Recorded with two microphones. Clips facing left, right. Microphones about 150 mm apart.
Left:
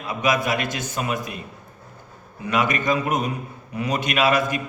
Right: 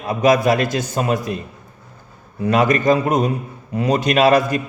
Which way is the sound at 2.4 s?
35° right (ahead or behind).